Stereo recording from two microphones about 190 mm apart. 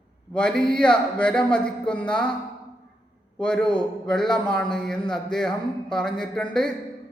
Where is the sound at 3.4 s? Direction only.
5° left (ahead or behind).